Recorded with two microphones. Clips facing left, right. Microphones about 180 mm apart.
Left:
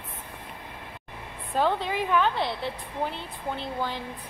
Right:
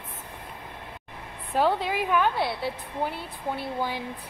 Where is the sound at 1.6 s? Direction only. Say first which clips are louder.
Right 1 dB; 5° right (ahead or behind).